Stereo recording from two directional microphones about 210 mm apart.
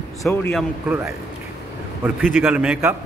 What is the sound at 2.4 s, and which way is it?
Speech, 5° right (ahead or behind).